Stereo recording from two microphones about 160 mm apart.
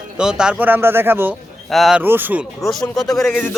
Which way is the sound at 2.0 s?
10° right (ahead or behind).